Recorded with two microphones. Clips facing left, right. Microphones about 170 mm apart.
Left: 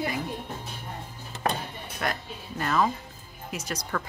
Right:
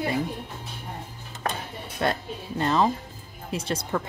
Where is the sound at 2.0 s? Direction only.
30° right (ahead or behind).